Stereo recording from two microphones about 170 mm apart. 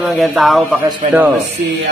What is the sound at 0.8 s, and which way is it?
Speech, 25° right (ahead or behind).